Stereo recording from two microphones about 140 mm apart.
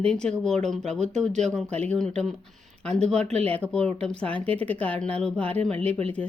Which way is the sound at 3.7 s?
5° left (ahead or behind).